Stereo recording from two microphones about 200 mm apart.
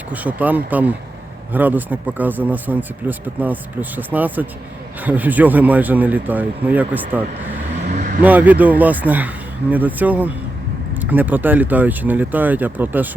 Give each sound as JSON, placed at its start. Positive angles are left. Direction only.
{"t": 0.1, "sound": "speech", "side_deg": -10}
{"t": 7.9, "sound": "speech", "side_deg": -40}
{"t": 8.2, "sound": "speech", "side_deg": -10}